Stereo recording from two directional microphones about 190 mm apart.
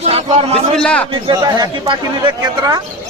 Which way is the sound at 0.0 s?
30° right (ahead or behind).